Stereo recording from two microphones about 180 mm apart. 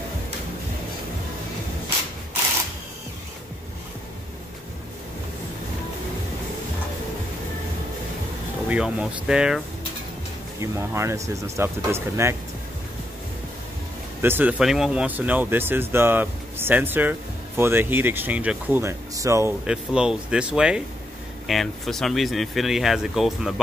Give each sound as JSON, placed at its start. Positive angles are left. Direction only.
{"t": 8.6, "sound": "speech", "side_deg": -5}
{"t": 10.6, "sound": "speech", "side_deg": -15}
{"t": 14.2, "sound": "speech", "side_deg": -10}
{"t": 19.6, "sound": "speech", "side_deg": -5}